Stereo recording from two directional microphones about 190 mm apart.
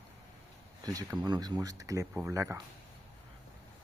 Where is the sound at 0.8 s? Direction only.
20° right (ahead or behind).